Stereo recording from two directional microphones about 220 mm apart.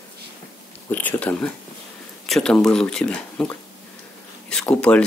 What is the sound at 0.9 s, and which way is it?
Speech, 5° left (ahead or behind).